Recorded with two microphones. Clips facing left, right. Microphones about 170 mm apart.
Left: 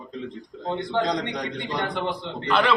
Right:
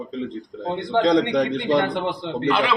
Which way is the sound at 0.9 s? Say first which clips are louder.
Right 9 dB; 65° right (ahead or behind).